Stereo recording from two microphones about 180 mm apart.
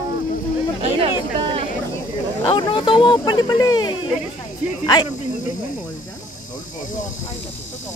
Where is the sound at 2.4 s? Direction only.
25° left (ahead or behind).